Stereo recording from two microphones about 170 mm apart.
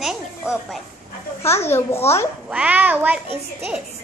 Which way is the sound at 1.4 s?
15° left (ahead or behind).